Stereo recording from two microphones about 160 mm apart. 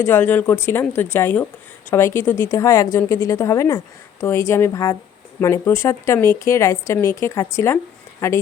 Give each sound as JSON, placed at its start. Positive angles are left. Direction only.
{"t": 0.0, "sound": "a woman's voice", "side_deg": 15}